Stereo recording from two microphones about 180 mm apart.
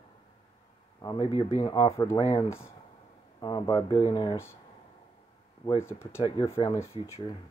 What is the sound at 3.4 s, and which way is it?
Speech, 25° left (ahead or behind).